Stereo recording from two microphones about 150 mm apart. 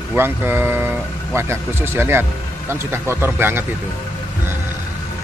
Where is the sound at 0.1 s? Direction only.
15° right (ahead or behind).